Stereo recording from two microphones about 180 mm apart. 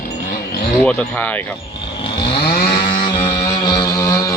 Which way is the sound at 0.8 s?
10° left (ahead or behind).